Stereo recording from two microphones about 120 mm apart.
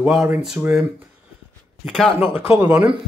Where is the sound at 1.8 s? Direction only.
5° left (ahead or behind).